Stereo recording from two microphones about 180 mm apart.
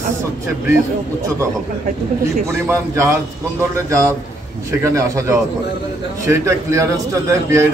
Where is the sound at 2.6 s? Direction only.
15° right (ahead or behind).